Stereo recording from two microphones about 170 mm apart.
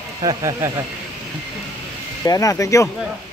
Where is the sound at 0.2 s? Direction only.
20° right (ahead or behind).